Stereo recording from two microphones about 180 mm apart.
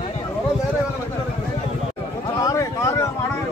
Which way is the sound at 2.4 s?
15° left (ahead or behind).